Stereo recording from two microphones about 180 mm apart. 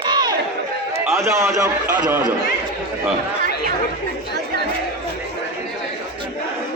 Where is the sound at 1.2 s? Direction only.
15° right (ahead or behind).